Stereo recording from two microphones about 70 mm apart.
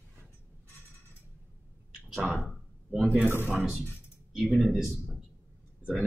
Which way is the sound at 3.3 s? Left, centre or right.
Right.